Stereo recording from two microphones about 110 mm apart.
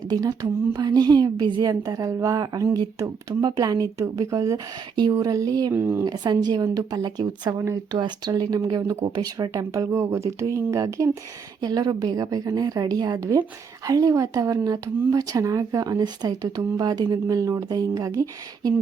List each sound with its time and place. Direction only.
0.1 s a woman's voice: 35° right (ahead or behind)
5.7 s speech: 20° right (ahead or behind)
6.1 s a woman's voice: 40° right (ahead or behind)
13.1 s a woman's voice: 25° right (ahead or behind)